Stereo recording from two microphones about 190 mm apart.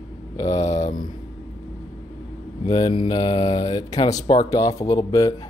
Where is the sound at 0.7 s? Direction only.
35° left (ahead or behind).